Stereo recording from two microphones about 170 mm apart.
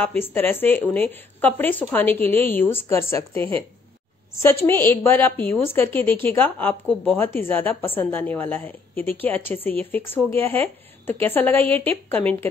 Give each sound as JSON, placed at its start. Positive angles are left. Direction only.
{"t": 0.2, "sound": "a woman's voice", "side_deg": 10}